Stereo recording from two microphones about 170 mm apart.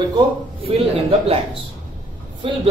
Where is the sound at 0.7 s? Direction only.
35° right (ahead or behind).